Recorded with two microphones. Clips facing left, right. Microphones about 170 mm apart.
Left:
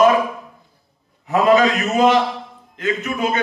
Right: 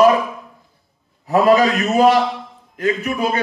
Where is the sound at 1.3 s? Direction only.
35° right (ahead or behind).